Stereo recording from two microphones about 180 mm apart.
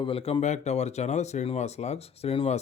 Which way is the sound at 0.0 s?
30° left (ahead or behind).